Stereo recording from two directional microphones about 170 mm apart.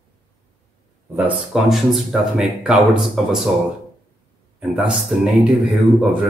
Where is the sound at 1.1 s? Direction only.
5° right (ahead or behind).